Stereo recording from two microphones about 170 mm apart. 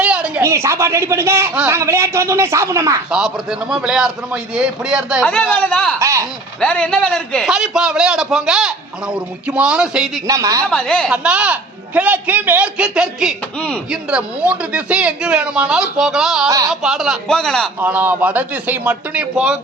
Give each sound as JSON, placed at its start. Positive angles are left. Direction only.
{"t": 0.0, "sound": "speech", "side_deg": -5}
{"t": 3.1, "sound": "a man's voice", "side_deg": -5}
{"t": 5.2, "sound": "a man's voice", "side_deg": 5}
{"t": 6.0, "sound": "speech", "side_deg": -15}
{"t": 6.6, "sound": "a man's voice", "side_deg": 5}
{"t": 10.2, "sound": "a woman's voice", "side_deg": -20}
{"t": 10.7, "sound": "a man's voice", "side_deg": 5}
{"t": 11.1, "sound": "a man's voice", "side_deg": -5}
{"t": 17.7, "sound": "a man's voice", "side_deg": -10}